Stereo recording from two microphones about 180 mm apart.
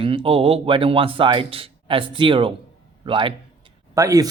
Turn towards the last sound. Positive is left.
turn(degrees=-15)  # may be behind; listen again after turning